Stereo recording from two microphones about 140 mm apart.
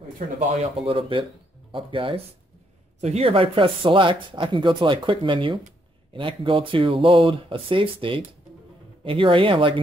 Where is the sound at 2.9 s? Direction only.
50° right (ahead or behind).